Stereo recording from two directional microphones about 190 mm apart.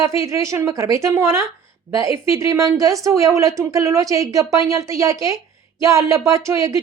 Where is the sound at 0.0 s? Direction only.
15° right (ahead or behind).